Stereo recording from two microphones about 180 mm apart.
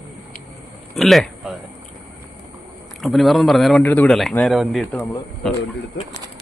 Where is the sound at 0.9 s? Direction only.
Centre (ahead or behind).